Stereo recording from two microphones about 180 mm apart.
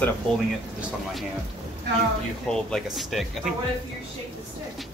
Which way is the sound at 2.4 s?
5° left (ahead or behind).